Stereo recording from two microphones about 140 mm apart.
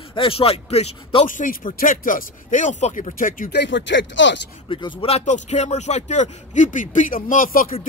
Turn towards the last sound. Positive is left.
turn(degrees=80)